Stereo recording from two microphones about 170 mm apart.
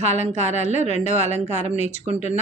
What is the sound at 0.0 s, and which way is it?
A woman's voice, 45° left (ahead or behind).